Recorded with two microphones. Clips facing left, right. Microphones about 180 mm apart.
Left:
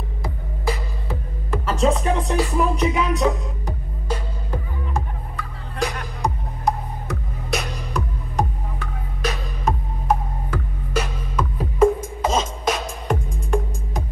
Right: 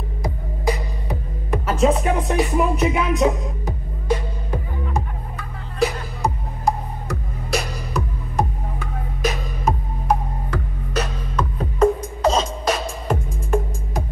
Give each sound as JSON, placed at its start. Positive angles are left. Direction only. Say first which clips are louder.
{"t": 0.2, "sound": "music", "louder": "right 4 dB", "side_deg": -15}
{"t": 6.2, "sound": "music", "louder": "right 1 dB", "side_deg": 0}